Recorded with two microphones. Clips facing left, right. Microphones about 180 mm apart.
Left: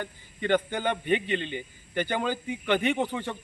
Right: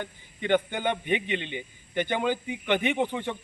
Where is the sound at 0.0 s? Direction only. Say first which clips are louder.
Left 1 dB; 15° right (ahead or behind).